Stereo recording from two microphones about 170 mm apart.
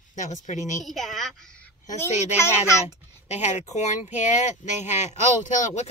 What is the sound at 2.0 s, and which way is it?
Speech, 45° left (ahead or behind).